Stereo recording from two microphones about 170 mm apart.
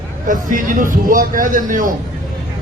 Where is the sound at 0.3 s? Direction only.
50° right (ahead or behind).